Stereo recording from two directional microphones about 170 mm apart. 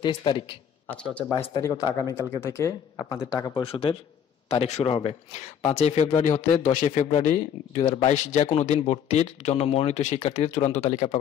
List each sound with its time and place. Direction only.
0.0 s speech: 25° left (ahead or behind)
1.6 s speech: 20° left (ahead or behind)
3.6 s a man's voice: 30° left (ahead or behind)